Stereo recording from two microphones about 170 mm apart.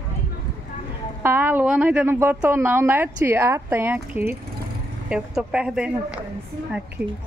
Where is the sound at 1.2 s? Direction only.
10° right (ahead or behind).